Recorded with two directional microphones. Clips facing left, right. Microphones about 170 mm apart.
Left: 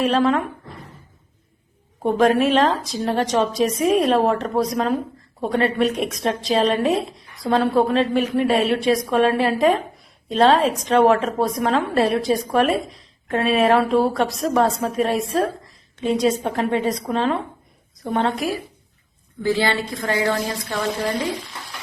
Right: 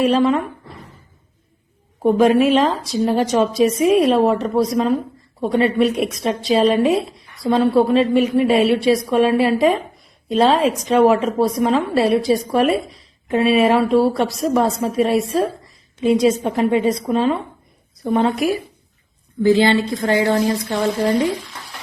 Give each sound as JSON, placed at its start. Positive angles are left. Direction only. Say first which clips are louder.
{"t": 0.0, "sound": "a woman's voice", "louder": "right 3 dB", "side_deg": 0}
{"t": 2.0, "sound": "a woman's voice", "louder": "right 3 dB", "side_deg": 0}
{"t": 19.4, "sound": "a woman's voice", "louder": "right 7 dB", "side_deg": -20}